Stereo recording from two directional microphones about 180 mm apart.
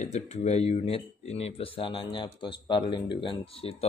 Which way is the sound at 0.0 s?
40° left (ahead or behind).